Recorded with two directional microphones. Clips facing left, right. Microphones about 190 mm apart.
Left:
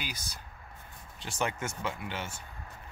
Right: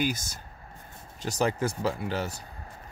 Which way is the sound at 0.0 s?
45° right (ahead or behind).